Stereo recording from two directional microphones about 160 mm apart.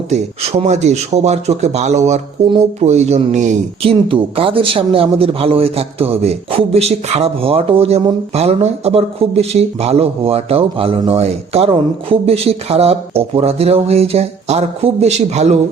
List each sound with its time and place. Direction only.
0.1 s speech: 45° right (ahead or behind)
3.8 s a man's voice: 35° right (ahead or behind)